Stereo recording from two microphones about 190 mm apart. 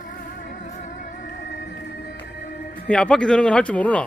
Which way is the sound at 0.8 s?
45° left (ahead or behind).